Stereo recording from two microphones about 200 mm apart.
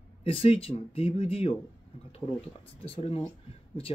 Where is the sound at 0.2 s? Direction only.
30° left (ahead or behind).